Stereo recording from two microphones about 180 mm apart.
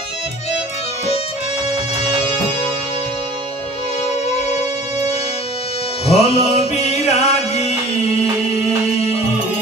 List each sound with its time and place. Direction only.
6.0 s music: 35° left (ahead or behind)